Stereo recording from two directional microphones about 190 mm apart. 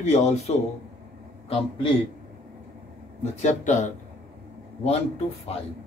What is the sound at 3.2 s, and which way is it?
Speech, 35° left (ahead or behind).